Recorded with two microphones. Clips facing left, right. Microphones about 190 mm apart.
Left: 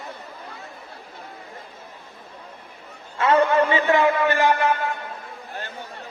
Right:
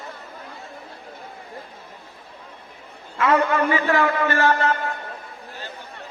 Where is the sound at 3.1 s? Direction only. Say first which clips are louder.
Left 2 dB; 30° left (ahead or behind).